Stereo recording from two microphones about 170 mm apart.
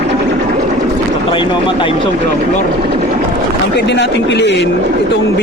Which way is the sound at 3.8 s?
90° left.